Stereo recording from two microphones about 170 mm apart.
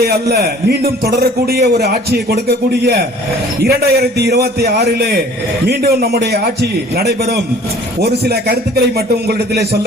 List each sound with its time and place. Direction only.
0.0 s a man's voice: 65° right (ahead or behind)